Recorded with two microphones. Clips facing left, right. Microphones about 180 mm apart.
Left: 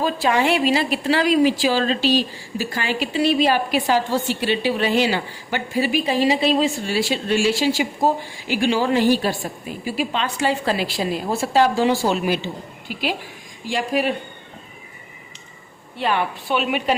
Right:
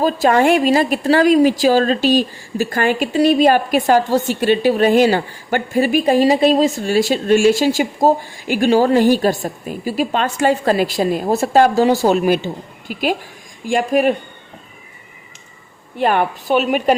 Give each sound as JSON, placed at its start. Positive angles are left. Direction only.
{"t": 0.0, "sound": "a woman's voice", "side_deg": -45}
{"t": 16.0, "sound": "a woman's voice", "side_deg": -50}